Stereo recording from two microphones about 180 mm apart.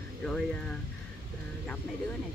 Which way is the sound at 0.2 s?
5° left (ahead or behind).